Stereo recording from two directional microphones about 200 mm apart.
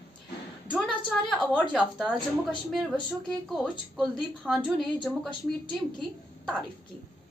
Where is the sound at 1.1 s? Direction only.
Centre (ahead or behind).